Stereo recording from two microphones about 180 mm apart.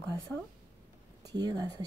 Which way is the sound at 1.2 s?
20° right (ahead or behind).